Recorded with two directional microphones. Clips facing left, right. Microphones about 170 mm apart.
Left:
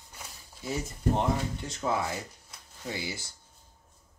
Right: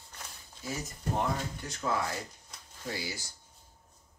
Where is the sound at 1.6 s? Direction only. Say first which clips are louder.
Right 1 dB; 25° left (ahead or behind).